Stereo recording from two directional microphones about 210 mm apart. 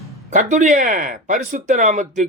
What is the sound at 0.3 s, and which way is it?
A man's voice, 35° right (ahead or behind).